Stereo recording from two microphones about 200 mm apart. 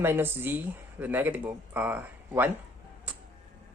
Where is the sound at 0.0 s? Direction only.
10° right (ahead or behind).